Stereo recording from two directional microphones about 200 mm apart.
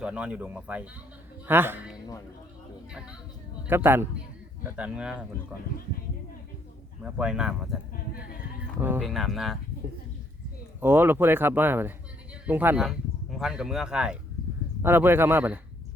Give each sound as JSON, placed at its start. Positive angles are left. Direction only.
{"t": 0.0, "sound": "speech", "side_deg": -5}
{"t": 3.7, "sound": "speech", "side_deg": -10}
{"t": 7.0, "sound": "speech", "side_deg": -5}
{"t": 8.1, "sound": "a sound", "side_deg": 50}
{"t": 8.8, "sound": "speech", "side_deg": -5}
{"t": 10.8, "sound": "speech", "side_deg": -10}